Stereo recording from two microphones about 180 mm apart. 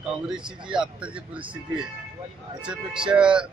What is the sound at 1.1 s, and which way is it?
Speech, 30° right (ahead or behind).